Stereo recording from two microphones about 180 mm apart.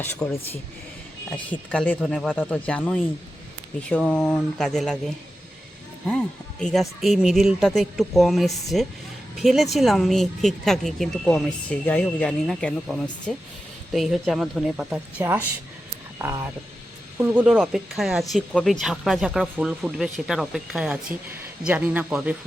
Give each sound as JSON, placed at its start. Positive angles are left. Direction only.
{"t": 0.0, "sound": "speech", "side_deg": 10}
{"t": 1.5, "sound": "speech", "side_deg": 5}